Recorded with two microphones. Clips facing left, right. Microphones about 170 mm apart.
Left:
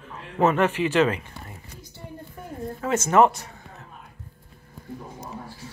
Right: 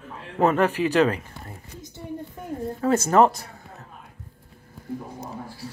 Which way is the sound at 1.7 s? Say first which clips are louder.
Right 7 dB; 20° right (ahead or behind).